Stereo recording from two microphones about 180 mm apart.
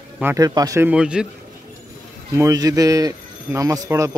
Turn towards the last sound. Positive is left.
turn(degrees=-15)  # may be behind; listen again after turning